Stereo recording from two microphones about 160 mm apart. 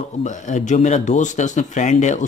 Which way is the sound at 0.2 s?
50° left (ahead or behind).